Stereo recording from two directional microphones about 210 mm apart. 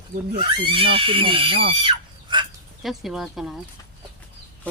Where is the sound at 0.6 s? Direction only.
25° right (ahead or behind).